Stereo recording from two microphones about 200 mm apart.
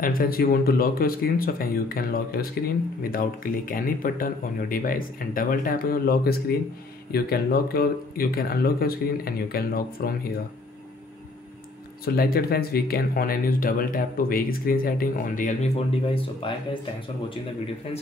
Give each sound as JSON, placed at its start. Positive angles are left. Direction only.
{"t": 0.0, "sound": "speech", "side_deg": 45}
{"t": 12.0, "sound": "speech", "side_deg": 50}